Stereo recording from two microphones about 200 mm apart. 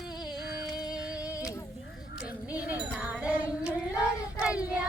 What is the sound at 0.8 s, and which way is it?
Music, 5° right (ahead or behind).